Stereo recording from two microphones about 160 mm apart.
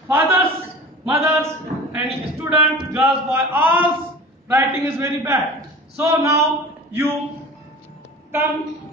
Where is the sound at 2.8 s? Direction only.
10° right (ahead or behind).